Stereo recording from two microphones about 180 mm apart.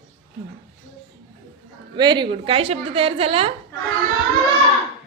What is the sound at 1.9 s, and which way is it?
A woman's voice, 25° right (ahead or behind).